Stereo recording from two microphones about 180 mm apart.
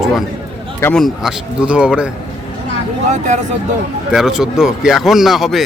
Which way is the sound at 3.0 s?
40° right (ahead or behind).